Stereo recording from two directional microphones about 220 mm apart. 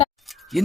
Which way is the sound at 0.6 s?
Centre (ahead or behind).